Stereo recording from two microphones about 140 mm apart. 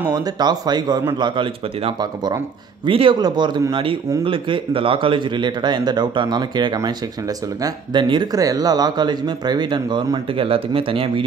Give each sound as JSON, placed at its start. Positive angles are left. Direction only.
{"t": 0.1, "sound": "speech", "side_deg": -30}
{"t": 2.0, "sound": "speech", "side_deg": -30}